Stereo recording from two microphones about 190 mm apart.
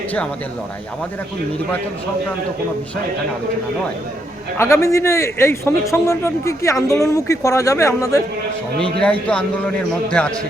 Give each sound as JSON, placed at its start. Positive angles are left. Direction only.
{"t": 4.5, "sound": "a man's voice", "side_deg": 15}
{"t": 8.8, "sound": "a man's voice", "side_deg": 5}